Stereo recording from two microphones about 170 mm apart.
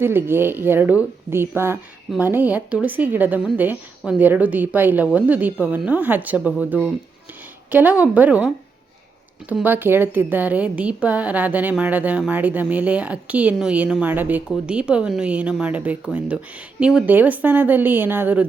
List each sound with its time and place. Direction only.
0.0 s a woman's voice: 15° right (ahead or behind)